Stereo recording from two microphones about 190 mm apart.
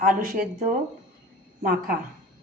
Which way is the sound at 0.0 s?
50° right (ahead or behind).